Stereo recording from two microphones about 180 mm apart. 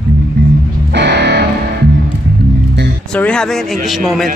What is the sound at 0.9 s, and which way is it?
Music, 70° right (ahead or behind).